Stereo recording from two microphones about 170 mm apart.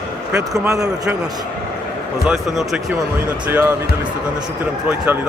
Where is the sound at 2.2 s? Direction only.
Centre (ahead or behind).